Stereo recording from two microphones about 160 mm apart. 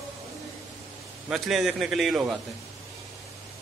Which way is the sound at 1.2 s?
Centre (ahead or behind).